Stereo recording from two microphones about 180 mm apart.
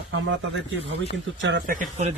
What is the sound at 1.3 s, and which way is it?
Speech, 90° right.